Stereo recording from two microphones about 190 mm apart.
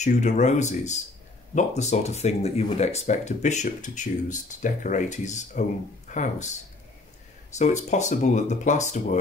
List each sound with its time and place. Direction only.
0.0 s speech: 40° left (ahead or behind)
7.5 s speech: 40° left (ahead or behind)